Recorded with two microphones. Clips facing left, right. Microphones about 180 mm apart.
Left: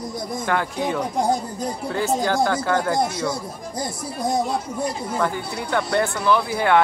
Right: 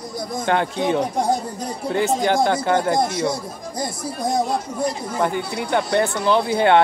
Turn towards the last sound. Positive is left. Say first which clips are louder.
# right 2 dB
turn(degrees=-25)  # may be behind; listen again after turning